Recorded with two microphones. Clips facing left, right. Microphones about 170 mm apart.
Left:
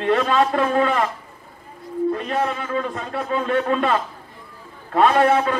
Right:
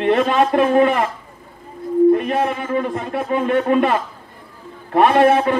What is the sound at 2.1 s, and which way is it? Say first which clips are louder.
A man's voice: right 4 dB; 20° right (ahead or behind).